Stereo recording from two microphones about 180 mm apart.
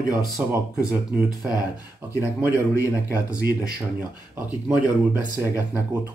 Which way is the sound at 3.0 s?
55° right (ahead or behind).